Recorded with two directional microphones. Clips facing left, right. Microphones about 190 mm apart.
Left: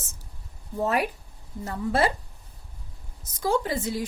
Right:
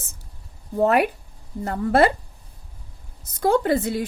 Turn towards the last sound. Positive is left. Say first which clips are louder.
# right 7 dB
turn(degrees=-60)  # may be behind; listen again after turning